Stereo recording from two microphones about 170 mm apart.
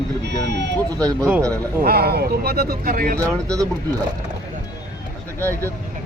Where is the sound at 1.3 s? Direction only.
20° right (ahead or behind).